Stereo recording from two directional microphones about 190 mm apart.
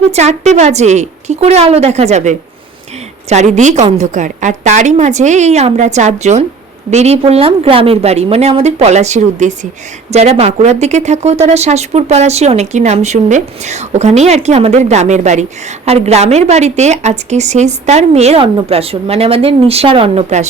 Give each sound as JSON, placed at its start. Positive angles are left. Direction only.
{"t": 0.0, "sound": "speech", "side_deg": -35}